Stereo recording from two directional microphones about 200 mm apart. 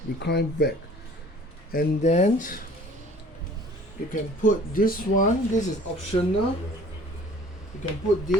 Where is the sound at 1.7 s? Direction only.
40° left (ahead or behind).